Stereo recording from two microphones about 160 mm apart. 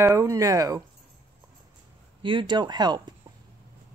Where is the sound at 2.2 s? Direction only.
30° right (ahead or behind).